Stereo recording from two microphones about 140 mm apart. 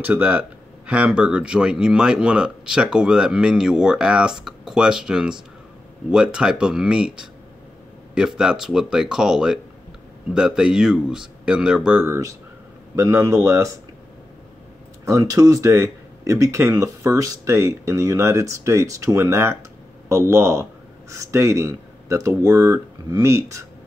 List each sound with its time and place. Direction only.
0.0 s speech: 10° right (ahead or behind)
15.0 s speech: 25° right (ahead or behind)